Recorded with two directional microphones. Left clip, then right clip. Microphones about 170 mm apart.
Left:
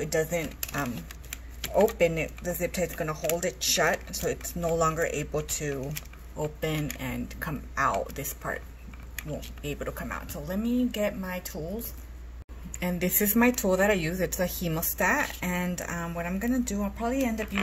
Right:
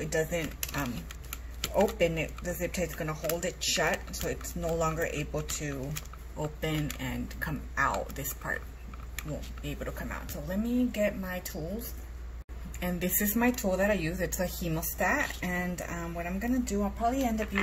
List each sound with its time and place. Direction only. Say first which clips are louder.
0.0 s speech: left 3 dB; 30° left (ahead or behind)
9.7 s speech: left 4 dB; 30° left (ahead or behind)
13.4 s speech: left 4 dB; 45° left (ahead or behind)